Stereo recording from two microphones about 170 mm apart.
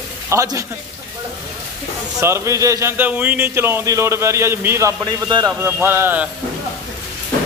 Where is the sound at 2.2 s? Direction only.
15° right (ahead or behind).